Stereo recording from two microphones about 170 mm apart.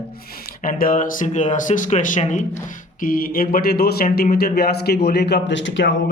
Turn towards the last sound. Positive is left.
turn(degrees=90)